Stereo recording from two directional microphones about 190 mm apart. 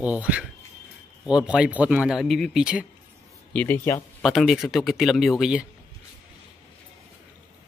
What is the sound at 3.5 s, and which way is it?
Speech, 10° left (ahead or behind).